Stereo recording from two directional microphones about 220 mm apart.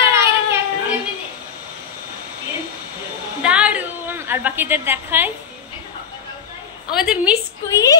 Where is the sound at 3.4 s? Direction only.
5° right (ahead or behind).